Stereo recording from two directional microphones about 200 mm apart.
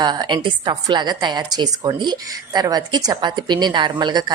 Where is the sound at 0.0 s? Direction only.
20° right (ahead or behind).